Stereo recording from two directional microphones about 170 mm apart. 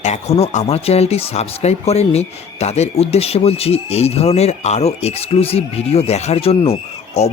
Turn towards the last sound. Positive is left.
turn(degrees=35)  # may be behind; listen again after turning